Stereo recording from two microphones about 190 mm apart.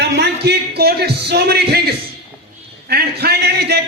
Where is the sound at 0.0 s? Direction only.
60° right (ahead or behind).